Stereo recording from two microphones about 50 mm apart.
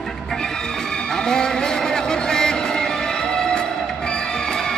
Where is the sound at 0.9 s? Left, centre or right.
Centre.